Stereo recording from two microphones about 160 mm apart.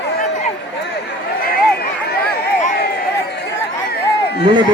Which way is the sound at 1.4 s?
70° left (ahead or behind).